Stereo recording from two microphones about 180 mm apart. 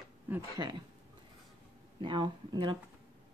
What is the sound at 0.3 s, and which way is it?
Speech, 20° right (ahead or behind).